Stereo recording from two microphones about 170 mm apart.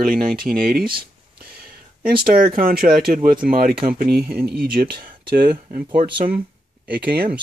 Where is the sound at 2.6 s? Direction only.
60° right (ahead or behind).